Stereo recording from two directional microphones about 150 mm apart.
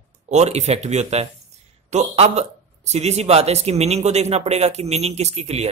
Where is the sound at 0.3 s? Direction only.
50° right (ahead or behind).